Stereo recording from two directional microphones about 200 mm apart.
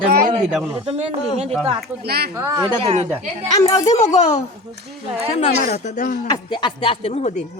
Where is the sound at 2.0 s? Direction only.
50° right (ahead or behind).